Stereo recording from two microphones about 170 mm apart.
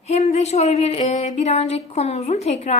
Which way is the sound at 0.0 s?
40° left (ahead or behind).